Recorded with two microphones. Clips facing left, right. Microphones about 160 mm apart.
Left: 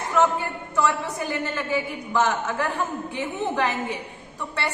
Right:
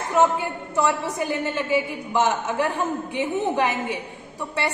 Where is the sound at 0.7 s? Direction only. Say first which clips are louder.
Right 1 dB; 15° right (ahead or behind).